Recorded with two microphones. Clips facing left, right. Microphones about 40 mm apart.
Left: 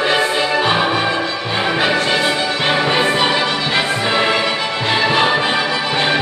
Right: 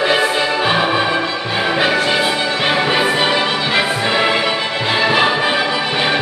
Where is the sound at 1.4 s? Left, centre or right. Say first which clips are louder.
Even; centre.